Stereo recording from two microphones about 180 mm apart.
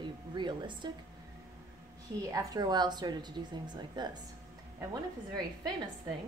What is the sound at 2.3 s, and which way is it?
Speech, 20° right (ahead or behind).